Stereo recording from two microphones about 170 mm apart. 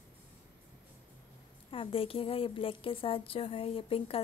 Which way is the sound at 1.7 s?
30° left (ahead or behind).